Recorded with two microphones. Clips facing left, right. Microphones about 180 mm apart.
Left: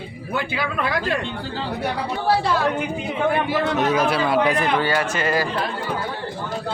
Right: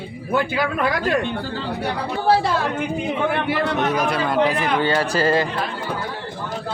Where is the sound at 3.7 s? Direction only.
Centre (ahead or behind).